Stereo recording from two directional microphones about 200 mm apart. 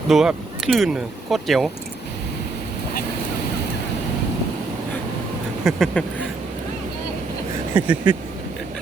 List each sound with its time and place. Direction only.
0.1 s speech: centre (ahead or behind)
5.6 s speech: 5° left (ahead or behind)
7.8 s speech: 10° right (ahead or behind)